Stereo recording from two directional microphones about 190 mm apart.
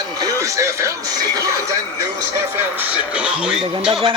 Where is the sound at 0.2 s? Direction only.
15° right (ahead or behind).